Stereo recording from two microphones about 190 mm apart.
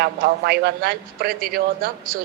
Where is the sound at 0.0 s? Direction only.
60° right (ahead or behind).